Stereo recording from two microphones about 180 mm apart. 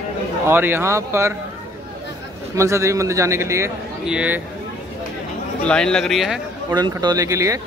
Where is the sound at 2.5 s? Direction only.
15° right (ahead or behind).